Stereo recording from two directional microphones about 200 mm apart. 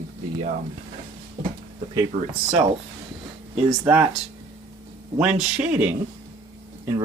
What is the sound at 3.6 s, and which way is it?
Speech, 10° right (ahead or behind).